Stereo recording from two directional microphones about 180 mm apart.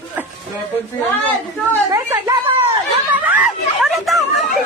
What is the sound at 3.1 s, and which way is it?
Chatter, 10° right (ahead or behind).